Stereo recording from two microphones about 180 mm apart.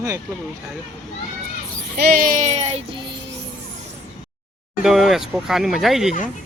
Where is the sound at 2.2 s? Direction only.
45° right (ahead or behind).